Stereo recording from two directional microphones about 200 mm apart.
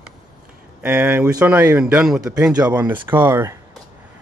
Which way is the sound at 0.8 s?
5° right (ahead or behind).